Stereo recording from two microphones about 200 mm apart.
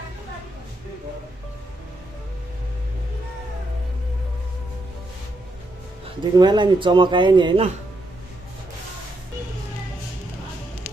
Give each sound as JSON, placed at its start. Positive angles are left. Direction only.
{"t": 6.0, "sound": "speech", "side_deg": -20}